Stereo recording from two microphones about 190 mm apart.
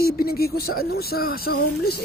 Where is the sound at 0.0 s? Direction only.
55° left (ahead or behind).